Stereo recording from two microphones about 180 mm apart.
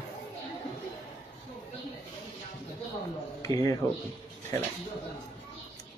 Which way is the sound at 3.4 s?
20° left (ahead or behind).